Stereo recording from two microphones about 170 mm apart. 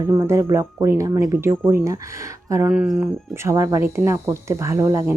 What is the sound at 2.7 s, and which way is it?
Speech, 5° right (ahead or behind).